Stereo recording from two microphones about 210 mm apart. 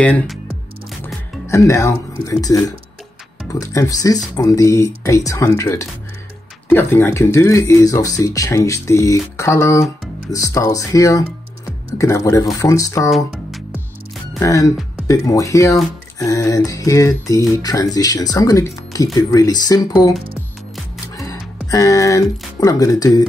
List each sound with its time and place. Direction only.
0.0 s speech: 5° left (ahead or behind)
1.0 s music: 10° left (ahead or behind)
3.5 s speech: 15° left (ahead or behind)
14.4 s speech: 15° left (ahead or behind)
21.6 s speech: 15° left (ahead or behind)